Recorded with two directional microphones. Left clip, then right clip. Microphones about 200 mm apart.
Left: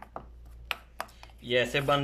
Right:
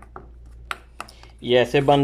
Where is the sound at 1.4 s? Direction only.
30° right (ahead or behind).